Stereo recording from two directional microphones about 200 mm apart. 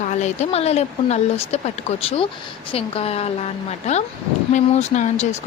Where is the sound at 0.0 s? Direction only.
35° left (ahead or behind).